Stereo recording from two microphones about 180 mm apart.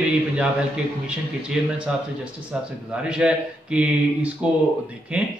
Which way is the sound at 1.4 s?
5° right (ahead or behind).